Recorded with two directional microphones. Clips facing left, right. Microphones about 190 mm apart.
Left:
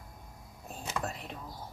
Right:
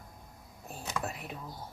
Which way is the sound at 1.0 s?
10° right (ahead or behind).